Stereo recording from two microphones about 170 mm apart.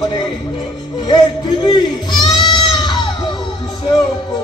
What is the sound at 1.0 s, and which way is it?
Goat, 25° left (ahead or behind).